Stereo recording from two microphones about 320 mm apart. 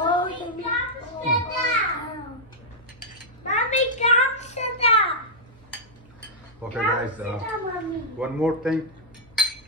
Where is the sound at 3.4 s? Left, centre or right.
Left.